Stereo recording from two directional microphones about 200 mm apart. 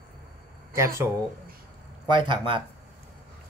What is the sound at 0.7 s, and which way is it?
Speech, 15° right (ahead or behind).